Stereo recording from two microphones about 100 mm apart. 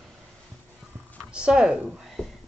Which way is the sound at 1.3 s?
10° right (ahead or behind).